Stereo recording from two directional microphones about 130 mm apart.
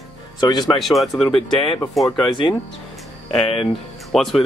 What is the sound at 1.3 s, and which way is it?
Speech, 40° left (ahead or behind).